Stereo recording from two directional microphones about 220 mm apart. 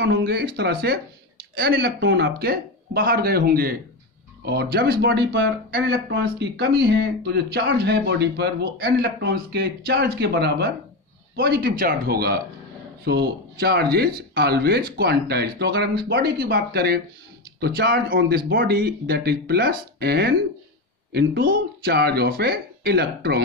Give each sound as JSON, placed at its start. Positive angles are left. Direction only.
{"t": 0.0, "sound": "speech", "side_deg": -45}